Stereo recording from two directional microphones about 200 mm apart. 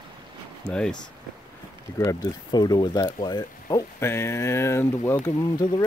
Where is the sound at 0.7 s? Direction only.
5° left (ahead or behind).